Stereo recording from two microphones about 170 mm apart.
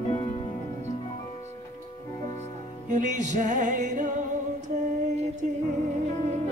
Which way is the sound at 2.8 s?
45° right (ahead or behind).